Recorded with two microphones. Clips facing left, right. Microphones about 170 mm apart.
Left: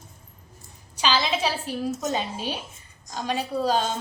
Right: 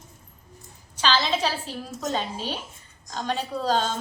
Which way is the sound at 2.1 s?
15° left (ahead or behind).